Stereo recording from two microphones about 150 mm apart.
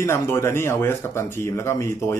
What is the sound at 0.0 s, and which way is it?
Speech, 15° left (ahead or behind).